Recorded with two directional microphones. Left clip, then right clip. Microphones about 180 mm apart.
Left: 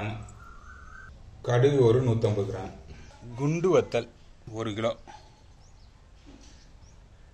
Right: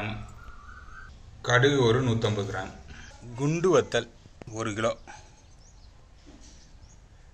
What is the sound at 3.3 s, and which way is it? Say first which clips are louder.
A man's voice: right 1 dB; centre (ahead or behind).